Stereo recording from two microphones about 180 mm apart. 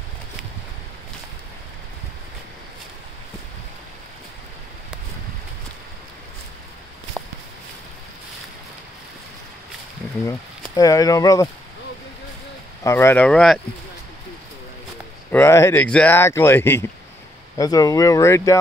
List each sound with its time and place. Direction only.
7.2 s a sound: centre (ahead or behind)
10.8 s speech: 20° left (ahead or behind)
12.8 s speech: 15° left (ahead or behind)
15.3 s speech: 15° left (ahead or behind)